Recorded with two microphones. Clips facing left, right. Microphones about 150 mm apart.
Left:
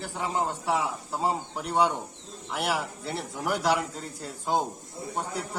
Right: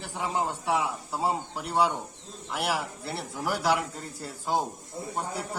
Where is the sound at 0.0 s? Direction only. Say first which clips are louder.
Left 1 dB; 10° right (ahead or behind).